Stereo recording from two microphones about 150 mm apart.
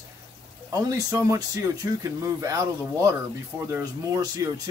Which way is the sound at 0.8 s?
20° right (ahead or behind).